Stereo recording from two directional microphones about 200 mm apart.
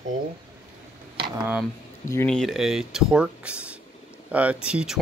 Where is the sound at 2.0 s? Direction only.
10° left (ahead or behind).